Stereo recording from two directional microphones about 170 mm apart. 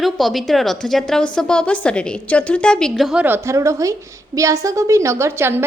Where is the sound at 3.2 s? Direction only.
15° right (ahead or behind).